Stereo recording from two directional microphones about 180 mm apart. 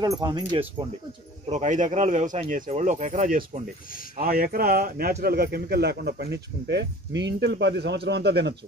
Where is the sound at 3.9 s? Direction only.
50° left (ahead or behind).